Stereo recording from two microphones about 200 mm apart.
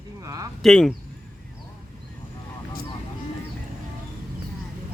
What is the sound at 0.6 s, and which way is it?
Speech, centre (ahead or behind).